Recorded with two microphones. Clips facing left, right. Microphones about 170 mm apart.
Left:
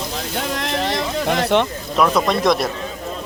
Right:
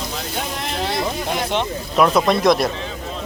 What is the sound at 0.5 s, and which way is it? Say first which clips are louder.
Speech: left 2 dB; 70° left (ahead or behind).